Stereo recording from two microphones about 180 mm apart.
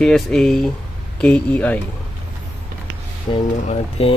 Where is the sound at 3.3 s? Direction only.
35° left (ahead or behind).